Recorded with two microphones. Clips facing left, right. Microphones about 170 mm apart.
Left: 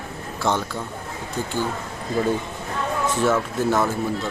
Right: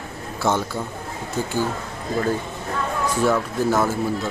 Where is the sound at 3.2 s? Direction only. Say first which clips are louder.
Right 1 dB; centre (ahead or behind).